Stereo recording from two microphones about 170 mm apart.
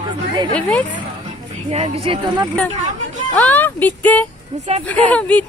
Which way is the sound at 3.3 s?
10° left (ahead or behind).